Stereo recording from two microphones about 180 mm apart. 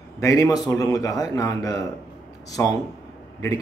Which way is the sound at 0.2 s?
15° left (ahead or behind).